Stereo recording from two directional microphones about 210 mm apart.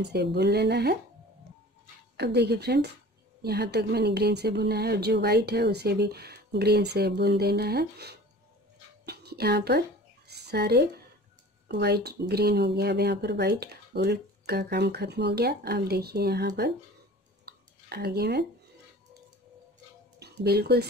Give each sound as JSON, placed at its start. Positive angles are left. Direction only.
{"t": 0.0, "sound": "speech", "side_deg": -50}
{"t": 2.1, "sound": "speech", "side_deg": -50}
{"t": 9.0, "sound": "a sound", "side_deg": -50}
{"t": 11.7, "sound": "speech", "side_deg": -50}
{"t": 17.5, "sound": "a sound", "side_deg": -50}
{"t": 20.2, "sound": "speech", "side_deg": -50}